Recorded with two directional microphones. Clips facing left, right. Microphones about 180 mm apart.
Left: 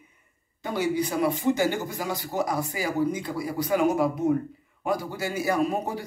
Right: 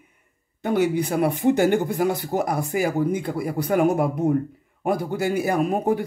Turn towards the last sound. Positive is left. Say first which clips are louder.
# right 5 dB
turn(degrees=-55)  # may be behind; listen again after turning